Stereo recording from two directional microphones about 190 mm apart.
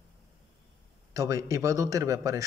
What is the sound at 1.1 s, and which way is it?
Speech, 15° right (ahead or behind).